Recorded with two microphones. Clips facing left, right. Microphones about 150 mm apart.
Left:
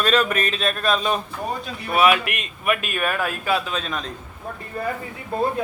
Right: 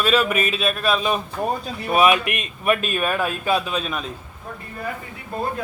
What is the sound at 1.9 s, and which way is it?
A man's voice, 25° right (ahead or behind).